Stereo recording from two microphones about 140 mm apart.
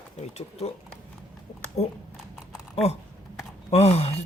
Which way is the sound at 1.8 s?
45° left (ahead or behind).